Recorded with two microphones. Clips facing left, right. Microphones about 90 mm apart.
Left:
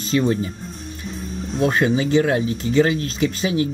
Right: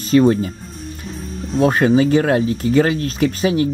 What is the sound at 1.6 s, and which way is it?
Speech, 45° right (ahead or behind).